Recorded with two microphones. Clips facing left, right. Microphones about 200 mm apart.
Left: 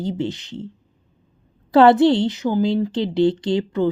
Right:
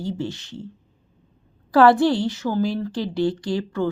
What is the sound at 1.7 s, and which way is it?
A woman's voice, 20° left (ahead or behind).